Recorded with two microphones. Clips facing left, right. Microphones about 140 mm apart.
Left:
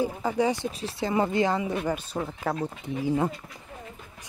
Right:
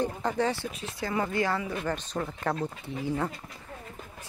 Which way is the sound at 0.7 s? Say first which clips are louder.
Left 5 dB; 35° left (ahead or behind).